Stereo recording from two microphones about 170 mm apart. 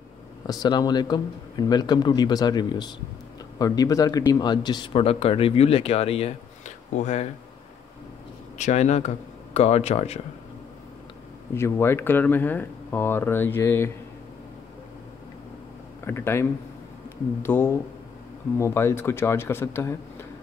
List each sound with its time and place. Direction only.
0.5 s a man's voice: 25° left (ahead or behind); by 7.2 s 45° left (ahead or behind)
8.5 s speech: 45° left (ahead or behind)
11.5 s speech: 15° left (ahead or behind)
16.0 s speech: 15° left (ahead or behind)